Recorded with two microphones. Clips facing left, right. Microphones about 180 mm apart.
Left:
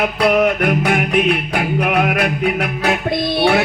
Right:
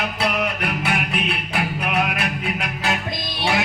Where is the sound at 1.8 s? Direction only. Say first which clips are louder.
Left 8 dB; 55° left (ahead or behind).